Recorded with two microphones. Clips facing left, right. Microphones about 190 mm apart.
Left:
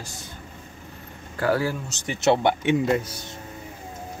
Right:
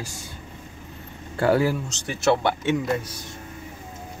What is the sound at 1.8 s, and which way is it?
Speech, 15° left (ahead or behind).